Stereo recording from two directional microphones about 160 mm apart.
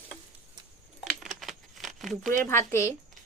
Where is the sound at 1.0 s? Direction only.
Centre (ahead or behind).